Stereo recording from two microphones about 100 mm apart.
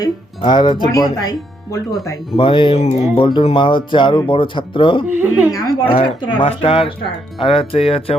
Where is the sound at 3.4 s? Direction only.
55° left (ahead or behind).